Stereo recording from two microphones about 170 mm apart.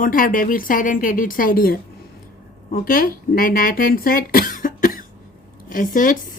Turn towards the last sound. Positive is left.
turn(degrees=50)  # may be behind; listen again after turning